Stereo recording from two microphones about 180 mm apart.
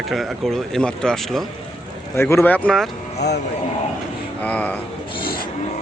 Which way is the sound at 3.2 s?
65° left (ahead or behind).